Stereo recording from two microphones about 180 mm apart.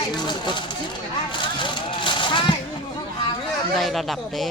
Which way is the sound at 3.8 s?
Centre (ahead or behind).